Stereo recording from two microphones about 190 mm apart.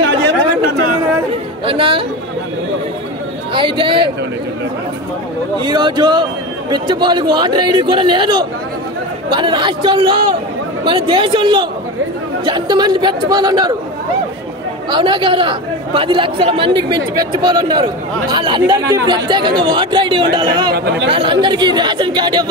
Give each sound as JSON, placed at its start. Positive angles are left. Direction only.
{"t": 1.7, "sound": "speech", "side_deg": -30}
{"t": 3.5, "sound": "speech", "side_deg": -25}
{"t": 5.6, "sound": "speech", "side_deg": -25}
{"t": 14.9, "sound": "speech", "side_deg": -25}
{"t": 20.7, "sound": "speech", "side_deg": -60}
{"t": 21.1, "sound": "speech", "side_deg": -25}